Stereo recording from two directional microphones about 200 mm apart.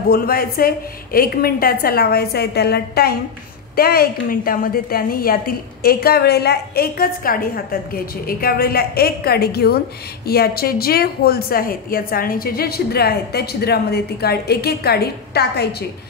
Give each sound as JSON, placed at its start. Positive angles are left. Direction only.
{"t": 0.1, "sound": "a woman's voice", "side_deg": 45}